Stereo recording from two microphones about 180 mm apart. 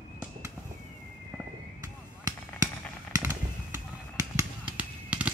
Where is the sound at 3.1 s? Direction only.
15° right (ahead or behind).